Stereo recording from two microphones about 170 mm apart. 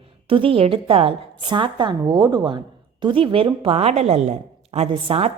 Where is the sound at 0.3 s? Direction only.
30° right (ahead or behind).